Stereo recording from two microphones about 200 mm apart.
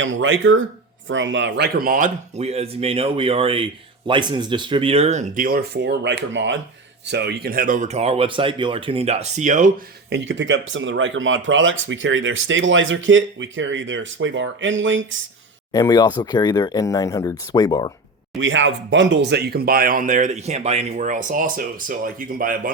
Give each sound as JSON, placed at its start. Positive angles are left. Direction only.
{"t": 0.0, "sound": "speech", "side_deg": -70}
{"t": 10.1, "sound": "speech", "side_deg": -65}
{"t": 15.7, "sound": "speech", "side_deg": 15}
{"t": 18.3, "sound": "speech", "side_deg": -70}